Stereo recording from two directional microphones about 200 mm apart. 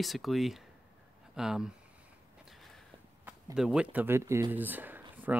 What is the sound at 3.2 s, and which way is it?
Speech, 5° right (ahead or behind).